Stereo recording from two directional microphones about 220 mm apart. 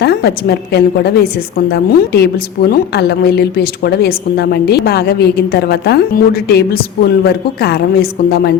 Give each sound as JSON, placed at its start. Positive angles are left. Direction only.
{"t": 0.0, "sound": "a woman's voice", "side_deg": 45}